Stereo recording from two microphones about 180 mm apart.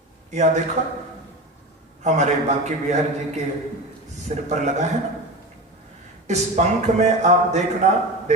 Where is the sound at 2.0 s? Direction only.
40° right (ahead or behind).